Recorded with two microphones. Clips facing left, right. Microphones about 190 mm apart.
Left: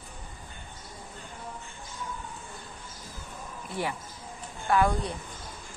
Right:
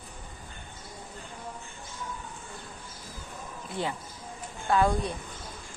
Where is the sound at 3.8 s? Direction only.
20° right (ahead or behind).